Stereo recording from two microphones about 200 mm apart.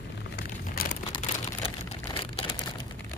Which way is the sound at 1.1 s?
25° left (ahead or behind).